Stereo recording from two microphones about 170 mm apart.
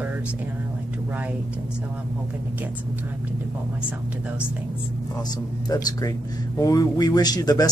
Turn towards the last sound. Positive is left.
turn(degrees=20)  # may be behind; listen again after turning